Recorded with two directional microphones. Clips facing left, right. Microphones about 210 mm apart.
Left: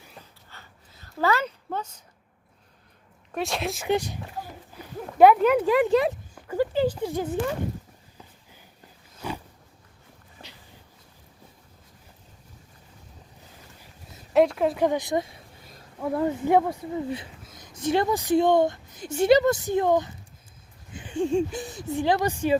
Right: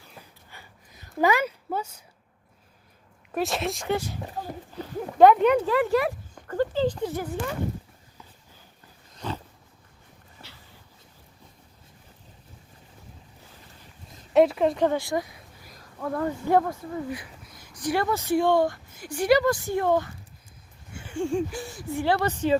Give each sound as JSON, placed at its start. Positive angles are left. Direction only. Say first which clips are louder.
{"t": 0.2, "sound": "a sound", "louder": "right 2 dB", "side_deg": -10}
{"t": 3.3, "sound": "speech", "louder": "right 2 dB", "side_deg": 0}
{"t": 3.8, "sound": "speech", "louder": "left 6 dB", "side_deg": 15}
{"t": 4.8, "sound": "a sound", "louder": "right 8 dB", "side_deg": 10}
{"t": 5.1, "sound": "speech", "louder": "even", "side_deg": 5}
{"t": 6.3, "sound": "speech", "louder": "even", "side_deg": 10}
{"t": 9.1, "sound": "dog", "louder": "even", "side_deg": 10}
{"t": 14.3, "sound": "speech", "louder": "right 1 dB", "side_deg": 0}
{"t": 14.8, "sound": "a sound", "louder": "left 1 dB", "side_deg": 20}
{"t": 16.0, "sound": "speech", "louder": "left 3 dB", "side_deg": 15}